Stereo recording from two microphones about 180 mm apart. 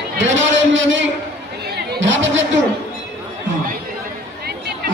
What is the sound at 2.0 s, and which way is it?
Chatter, 90° right.